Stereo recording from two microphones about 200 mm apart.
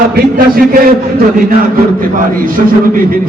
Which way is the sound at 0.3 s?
45° right (ahead or behind).